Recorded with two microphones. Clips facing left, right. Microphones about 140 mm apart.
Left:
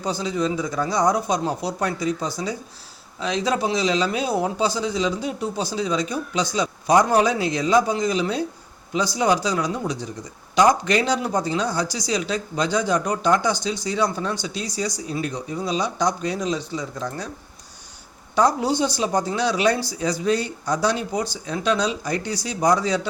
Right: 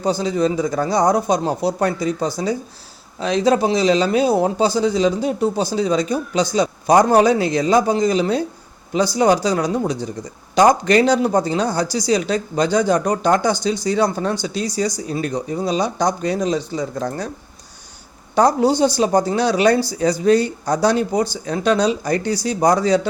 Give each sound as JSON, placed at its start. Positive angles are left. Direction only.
{"t": 0.0, "sound": "speech", "side_deg": -35}
{"t": 3.2, "sound": "speech", "side_deg": -35}
{"t": 6.9, "sound": "speech", "side_deg": -50}
{"t": 18.3, "sound": "speech", "side_deg": -40}